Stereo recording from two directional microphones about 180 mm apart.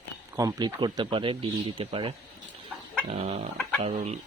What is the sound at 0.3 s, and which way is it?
Speech, 20° right (ahead or behind).